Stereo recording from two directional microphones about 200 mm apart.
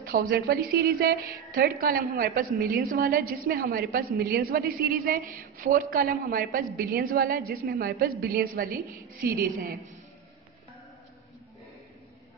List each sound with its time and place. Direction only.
0.0 s a woman's voice: 45° right (ahead or behind)